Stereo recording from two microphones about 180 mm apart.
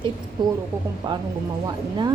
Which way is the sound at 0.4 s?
25° right (ahead or behind).